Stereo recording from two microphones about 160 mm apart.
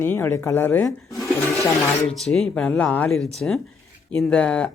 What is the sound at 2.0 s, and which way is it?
Speech, 5° left (ahead or behind).